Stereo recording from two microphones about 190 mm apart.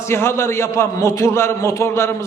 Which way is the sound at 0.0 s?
15° left (ahead or behind).